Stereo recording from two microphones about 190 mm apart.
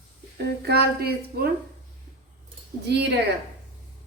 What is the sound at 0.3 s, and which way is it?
Speech, 55° right (ahead or behind).